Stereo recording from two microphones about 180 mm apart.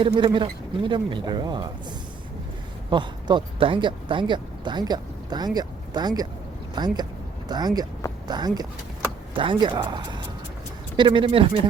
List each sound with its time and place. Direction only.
0.0 s speech: 25° right (ahead or behind)
2.9 s speech: 25° right (ahead or behind)